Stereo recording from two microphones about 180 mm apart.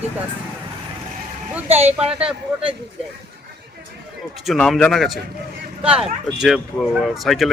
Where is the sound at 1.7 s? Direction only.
35° right (ahead or behind).